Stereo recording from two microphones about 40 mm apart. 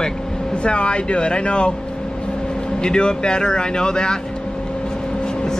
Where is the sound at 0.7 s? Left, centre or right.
Left.